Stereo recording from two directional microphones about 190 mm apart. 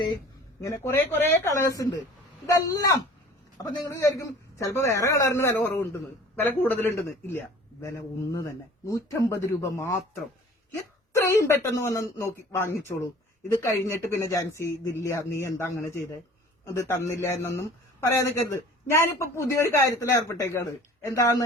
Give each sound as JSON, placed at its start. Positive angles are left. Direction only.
{"t": 0.6, "sound": "a man's voice", "side_deg": 15}
{"t": 11.1, "sound": "a man's voice", "side_deg": 15}